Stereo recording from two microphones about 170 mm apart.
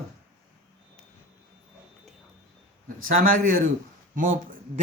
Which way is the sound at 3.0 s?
55° right (ahead or behind).